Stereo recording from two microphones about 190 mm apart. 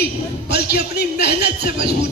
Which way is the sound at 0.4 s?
60° left (ahead or behind).